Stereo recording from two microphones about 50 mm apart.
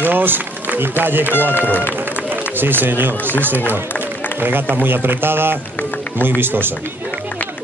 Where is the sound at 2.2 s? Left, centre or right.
Right.